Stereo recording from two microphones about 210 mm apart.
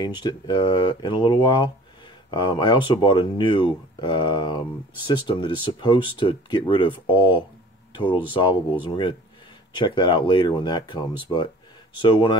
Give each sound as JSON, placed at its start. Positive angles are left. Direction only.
{"t": 0.0, "sound": "speech", "side_deg": 20}
{"t": 9.8, "sound": "speech", "side_deg": 20}